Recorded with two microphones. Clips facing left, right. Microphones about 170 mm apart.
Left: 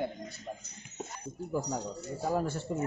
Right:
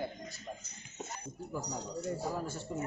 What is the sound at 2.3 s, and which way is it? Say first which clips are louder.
Speech: left 7 dB; 65° left (ahead or behind).